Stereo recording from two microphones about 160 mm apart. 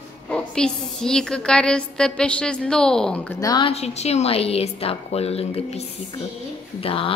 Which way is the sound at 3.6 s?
40° left (ahead or behind).